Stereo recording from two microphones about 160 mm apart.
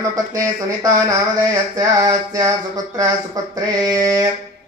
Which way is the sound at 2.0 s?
25° right (ahead or behind).